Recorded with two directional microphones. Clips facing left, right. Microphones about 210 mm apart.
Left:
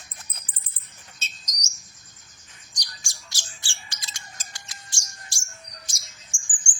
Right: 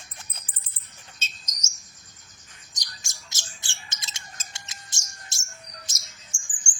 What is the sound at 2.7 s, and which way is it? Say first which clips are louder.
Bird: left 1 dB; 20° right (ahead or behind).